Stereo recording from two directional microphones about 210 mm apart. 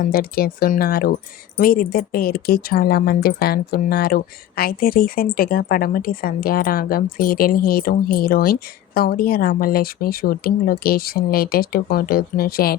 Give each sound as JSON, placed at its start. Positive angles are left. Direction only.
{"t": 0.0, "sound": "speech", "side_deg": 45}